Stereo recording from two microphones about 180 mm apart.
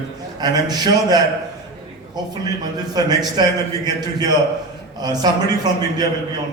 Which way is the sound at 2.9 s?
20° right (ahead or behind).